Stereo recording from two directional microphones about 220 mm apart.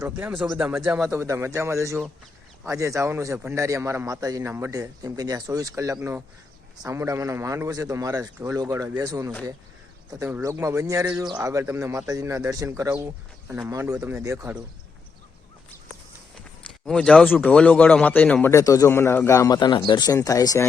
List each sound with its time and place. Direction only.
0.0 s speech: 5° right (ahead or behind)
1.1 s a man's voice: 10° right (ahead or behind)
16.8 s a man's voice: 5° left (ahead or behind)